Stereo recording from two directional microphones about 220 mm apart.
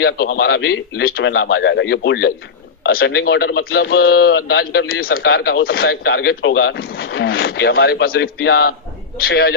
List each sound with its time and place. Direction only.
0.0 s speech: 45° left (ahead or behind)